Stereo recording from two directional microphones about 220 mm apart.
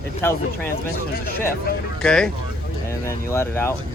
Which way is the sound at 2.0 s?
5° left (ahead or behind).